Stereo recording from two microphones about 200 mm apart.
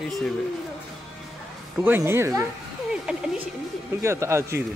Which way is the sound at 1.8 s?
10° right (ahead or behind).